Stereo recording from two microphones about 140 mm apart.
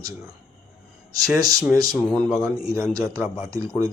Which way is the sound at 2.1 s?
5° left (ahead or behind).